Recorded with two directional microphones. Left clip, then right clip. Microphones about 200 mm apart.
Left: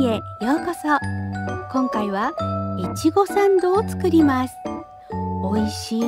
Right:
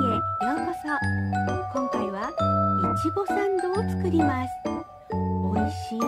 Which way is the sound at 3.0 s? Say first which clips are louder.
Left 7 dB; 50° left (ahead or behind).